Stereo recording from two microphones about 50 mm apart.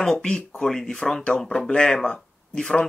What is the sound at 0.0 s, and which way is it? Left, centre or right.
A woman's voice, centre.